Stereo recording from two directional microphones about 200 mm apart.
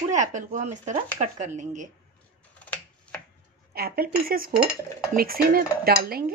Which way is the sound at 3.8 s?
50° right (ahead or behind).